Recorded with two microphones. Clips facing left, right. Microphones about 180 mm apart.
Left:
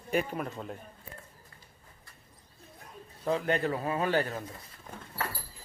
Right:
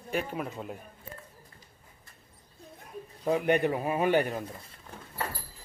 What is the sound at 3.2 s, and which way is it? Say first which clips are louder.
Speech: right 3 dB; 15° right (ahead or behind).